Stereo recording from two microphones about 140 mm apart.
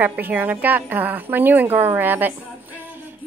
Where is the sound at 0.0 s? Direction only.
10° right (ahead or behind).